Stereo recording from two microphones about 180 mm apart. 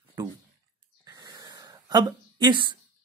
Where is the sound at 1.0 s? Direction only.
20° right (ahead or behind).